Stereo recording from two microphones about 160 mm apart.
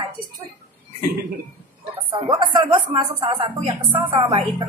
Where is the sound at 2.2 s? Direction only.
30° right (ahead or behind).